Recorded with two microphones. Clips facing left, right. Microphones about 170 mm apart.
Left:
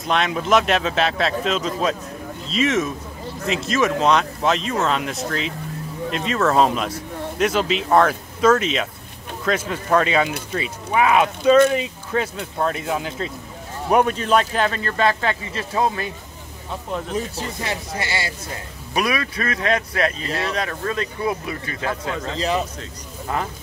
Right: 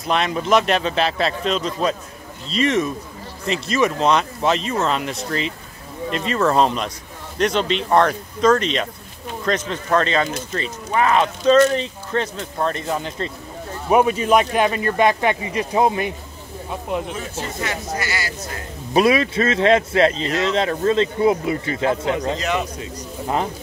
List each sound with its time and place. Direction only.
0.0 s speech: centre (ahead or behind); by 16.1 s 20° right (ahead or behind)
17.1 s speech: 30° left (ahead or behind)
18.9 s speech: 25° right (ahead or behind)
22.4 s a man's voice: 35° left (ahead or behind)
23.2 s speech: 20° right (ahead or behind)